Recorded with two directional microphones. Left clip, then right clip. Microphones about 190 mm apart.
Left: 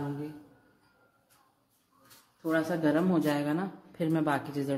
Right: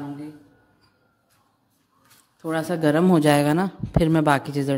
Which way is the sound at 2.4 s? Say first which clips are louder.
Right 5 dB; 65° right (ahead or behind).